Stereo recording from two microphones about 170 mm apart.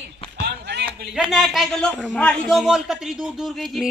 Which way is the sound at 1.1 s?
5° right (ahead or behind).